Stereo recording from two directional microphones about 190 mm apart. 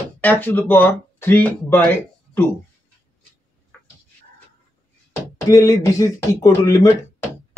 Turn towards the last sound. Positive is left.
turn(degrees=15)  # may be behind; listen again after turning